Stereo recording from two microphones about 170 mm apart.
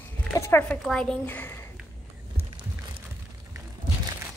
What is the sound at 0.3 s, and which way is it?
A woman's voice, 15° left (ahead or behind).